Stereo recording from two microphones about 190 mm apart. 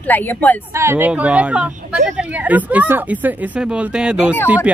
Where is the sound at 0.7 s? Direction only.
15° right (ahead or behind).